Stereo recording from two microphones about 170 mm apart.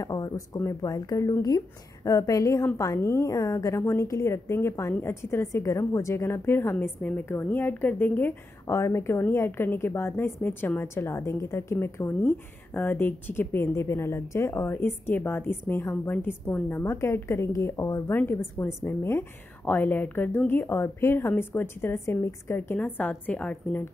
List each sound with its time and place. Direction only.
0.0 s a woman's voice: 20° left (ahead or behind)